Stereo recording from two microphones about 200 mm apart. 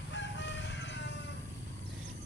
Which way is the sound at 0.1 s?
65° left (ahead or behind).